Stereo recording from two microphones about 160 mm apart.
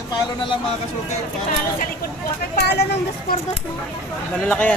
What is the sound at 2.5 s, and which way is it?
Speech, 90° left.